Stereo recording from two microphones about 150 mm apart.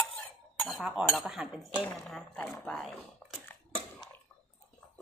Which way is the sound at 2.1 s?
5° left (ahead or behind).